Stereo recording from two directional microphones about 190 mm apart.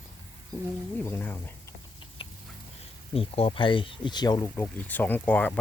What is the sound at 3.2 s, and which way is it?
Speech, 30° left (ahead or behind).